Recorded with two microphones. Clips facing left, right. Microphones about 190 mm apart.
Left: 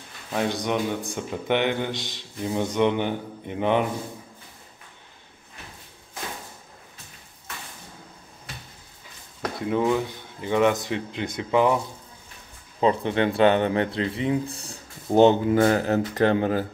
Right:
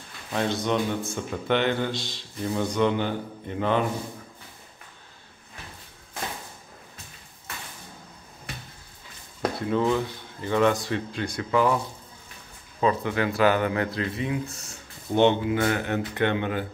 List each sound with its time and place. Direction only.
0.3 s speech: 10° left (ahead or behind)
9.7 s speech: 15° left (ahead or behind)
12.8 s speech: 25° left (ahead or behind)